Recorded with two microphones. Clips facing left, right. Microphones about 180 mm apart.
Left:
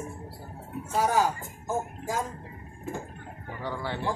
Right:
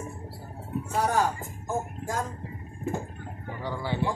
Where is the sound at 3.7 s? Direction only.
10° right (ahead or behind).